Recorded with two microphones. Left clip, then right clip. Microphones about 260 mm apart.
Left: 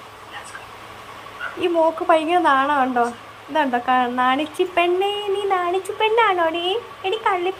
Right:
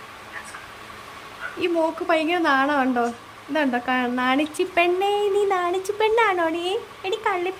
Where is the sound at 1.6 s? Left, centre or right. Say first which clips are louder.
Left 4 dB; centre.